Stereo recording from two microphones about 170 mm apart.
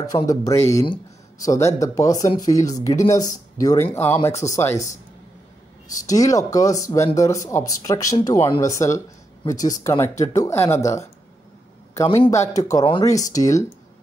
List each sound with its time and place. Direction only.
0.0 s speech: 20° left (ahead or behind)
6.0 s speech: 20° left (ahead or behind)
12.3 s speech: 20° left (ahead or behind)